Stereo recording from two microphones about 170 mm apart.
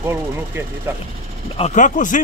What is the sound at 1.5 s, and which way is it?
Speech, 45° left (ahead or behind).